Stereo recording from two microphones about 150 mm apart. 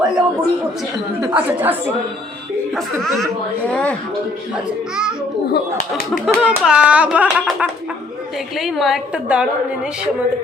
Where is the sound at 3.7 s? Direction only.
10° left (ahead or behind).